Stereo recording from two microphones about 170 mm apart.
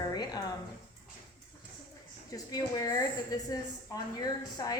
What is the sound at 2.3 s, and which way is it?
A woman's voice, 20° left (ahead or behind).